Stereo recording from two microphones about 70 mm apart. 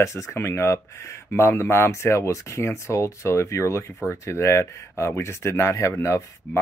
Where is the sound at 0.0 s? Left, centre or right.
Left.